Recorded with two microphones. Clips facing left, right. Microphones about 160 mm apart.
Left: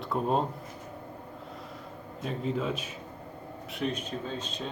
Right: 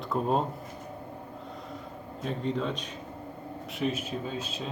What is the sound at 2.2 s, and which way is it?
Speech, 5° left (ahead or behind).